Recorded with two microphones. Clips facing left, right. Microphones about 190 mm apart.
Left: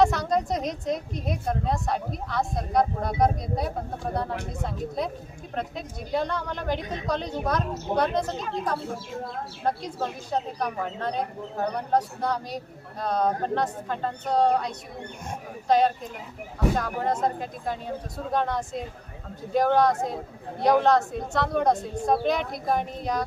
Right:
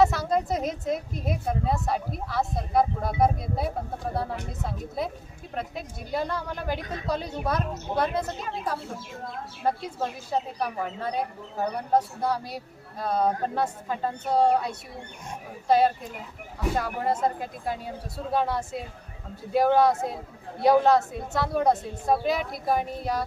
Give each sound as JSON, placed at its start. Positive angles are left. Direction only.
{"t": 0.0, "sound": "a woman's voice", "side_deg": -5}